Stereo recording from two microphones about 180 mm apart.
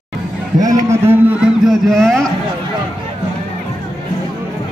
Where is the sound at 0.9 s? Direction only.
10° right (ahead or behind).